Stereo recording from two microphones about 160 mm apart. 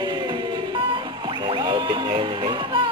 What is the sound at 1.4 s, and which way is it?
Music, 30° right (ahead or behind).